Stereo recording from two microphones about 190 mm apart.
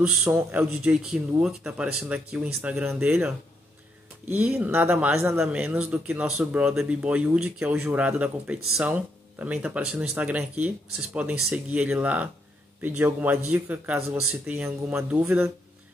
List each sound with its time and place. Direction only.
0.0 s speech: 10° right (ahead or behind)
4.4 s speech: 5° right (ahead or behind)